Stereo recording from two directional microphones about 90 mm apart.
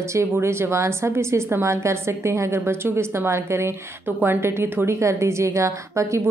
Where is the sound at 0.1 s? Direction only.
30° right (ahead or behind).